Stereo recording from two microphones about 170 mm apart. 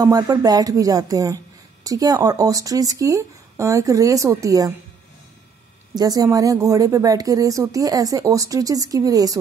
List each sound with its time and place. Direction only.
0.0 s a woman's voice: 20° right (ahead or behind)
5.9 s a woman's voice: 20° right (ahead or behind)